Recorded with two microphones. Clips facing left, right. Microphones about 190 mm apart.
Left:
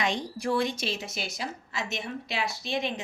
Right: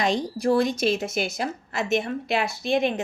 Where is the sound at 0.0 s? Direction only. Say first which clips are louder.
Right 6 dB; 35° right (ahead or behind).